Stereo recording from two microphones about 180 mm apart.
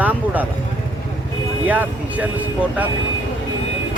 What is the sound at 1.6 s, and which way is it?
Speech, 10° right (ahead or behind).